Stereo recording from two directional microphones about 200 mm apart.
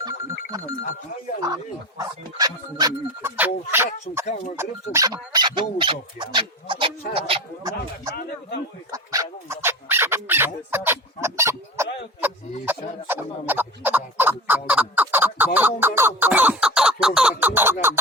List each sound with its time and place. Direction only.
0.0 s telephone bell ringing: 15° right (ahead or behind)
2.0 s speech: 20° right (ahead or behind)
14.7 s chicken: 5° right (ahead or behind)